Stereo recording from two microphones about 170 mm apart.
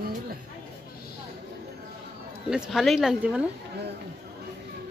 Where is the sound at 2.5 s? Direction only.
5° right (ahead or behind).